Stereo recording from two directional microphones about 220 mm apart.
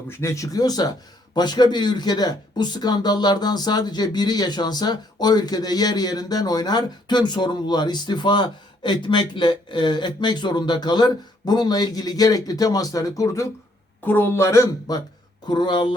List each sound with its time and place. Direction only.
0.2 s a man's voice: 15° left (ahead or behind)